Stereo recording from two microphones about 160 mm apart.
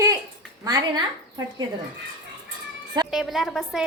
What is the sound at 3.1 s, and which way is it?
Speech, centre (ahead or behind).